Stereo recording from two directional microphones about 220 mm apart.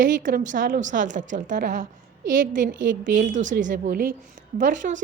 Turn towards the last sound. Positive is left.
turn(degrees=-35)  # may be behind; listen again after turning